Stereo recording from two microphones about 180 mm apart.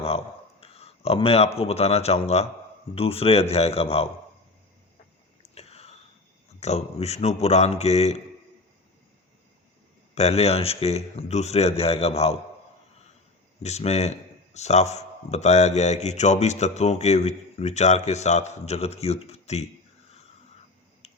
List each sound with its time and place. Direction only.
0.6 s a man's voice: 35° left (ahead or behind)
5.4 s whispering: 35° left (ahead or behind)
6.6 s a man's voice: 35° left (ahead or behind)
10.2 s a man's voice: 35° left (ahead or behind)
13.6 s a man's voice: 35° left (ahead or behind)